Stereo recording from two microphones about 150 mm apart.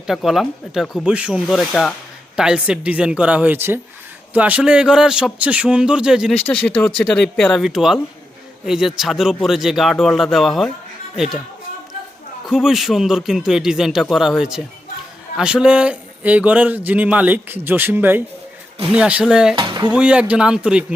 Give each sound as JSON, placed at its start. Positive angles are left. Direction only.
{"t": 0.1, "sound": "a man's voice", "side_deg": 0}
{"t": 6.4, "sound": "a man's voice", "side_deg": 10}
{"t": 12.5, "sound": "a man's voice", "side_deg": 0}
{"t": 19.5, "sound": "speech", "side_deg": -30}
{"t": 19.9, "sound": "speech", "side_deg": -5}